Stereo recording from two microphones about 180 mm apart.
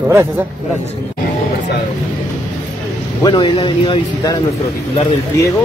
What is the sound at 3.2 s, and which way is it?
Speech, 25° left (ahead or behind).